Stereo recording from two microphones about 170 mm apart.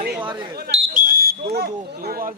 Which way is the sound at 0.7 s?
55° right (ahead or behind).